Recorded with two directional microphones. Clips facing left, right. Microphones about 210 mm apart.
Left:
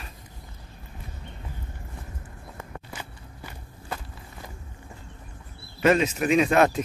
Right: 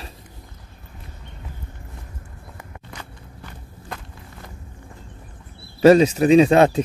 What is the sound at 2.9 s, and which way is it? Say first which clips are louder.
Walk: right 1 dB; 5° left (ahead or behind).